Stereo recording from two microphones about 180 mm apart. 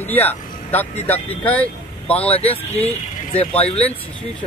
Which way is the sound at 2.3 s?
35° left (ahead or behind).